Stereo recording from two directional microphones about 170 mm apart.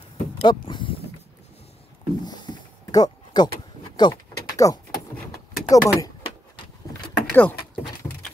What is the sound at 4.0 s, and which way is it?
Door, 20° left (ahead or behind).